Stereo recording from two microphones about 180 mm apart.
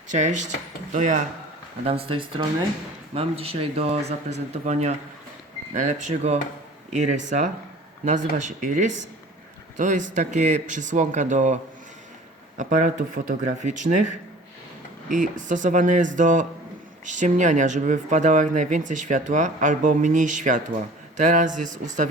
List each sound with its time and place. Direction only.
0.1 s speech: 40° right (ahead or behind)
1.8 s speech: 30° right (ahead or behind)
15.1 s speech: 45° right (ahead or behind)